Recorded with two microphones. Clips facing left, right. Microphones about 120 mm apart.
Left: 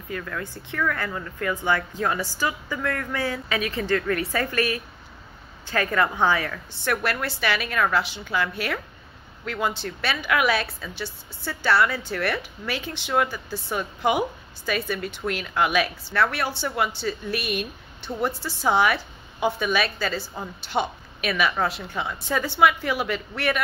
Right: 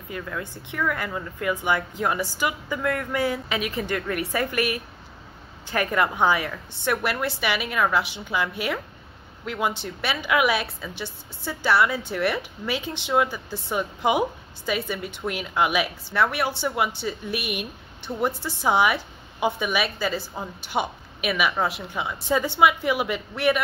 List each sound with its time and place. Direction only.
0.1 s a woman's voice: 20° right (ahead or behind)